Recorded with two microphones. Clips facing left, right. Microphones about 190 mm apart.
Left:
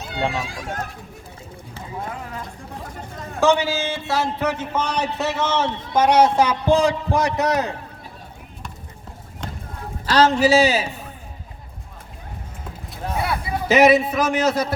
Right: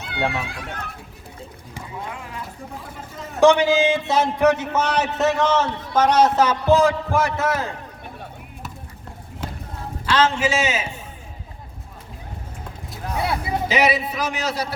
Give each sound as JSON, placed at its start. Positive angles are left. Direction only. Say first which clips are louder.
{"t": 0.0, "sound": "speech", "louder": "even", "side_deg": -60}
{"t": 2.0, "sound": "clip-clop", "louder": "left 2 dB", "side_deg": 40}
{"t": 3.4, "sound": "a man's voice", "louder": "right 4 dB", "side_deg": -15}
{"t": 9.4, "sound": "run", "louder": "right 1 dB", "side_deg": -5}
{"t": 10.1, "sound": "a man's voice", "louder": "left 4 dB", "side_deg": 40}
{"t": 13.2, "sound": "speech", "louder": "right 3 dB", "side_deg": -25}
{"t": 13.7, "sound": "a man's voice", "louder": "left 7 dB", "side_deg": 50}